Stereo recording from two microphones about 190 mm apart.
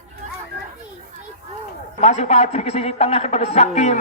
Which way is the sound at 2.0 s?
35° left (ahead or behind).